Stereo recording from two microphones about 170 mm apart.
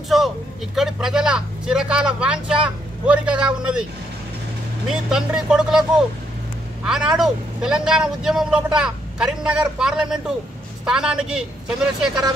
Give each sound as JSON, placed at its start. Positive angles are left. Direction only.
{"t": 0.7, "sound": "a man's voice", "side_deg": -5}
{"t": 4.8, "sound": "a man's voice", "side_deg": -5}